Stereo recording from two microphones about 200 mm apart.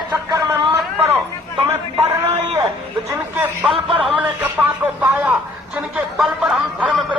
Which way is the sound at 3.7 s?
25° right (ahead or behind).